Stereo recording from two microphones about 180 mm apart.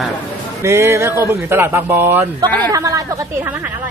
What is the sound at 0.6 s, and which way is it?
A man's voice, 15° right (ahead or behind).